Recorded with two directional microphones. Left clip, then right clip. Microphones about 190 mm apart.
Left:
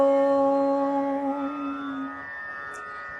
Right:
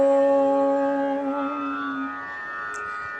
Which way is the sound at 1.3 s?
45° right (ahead or behind).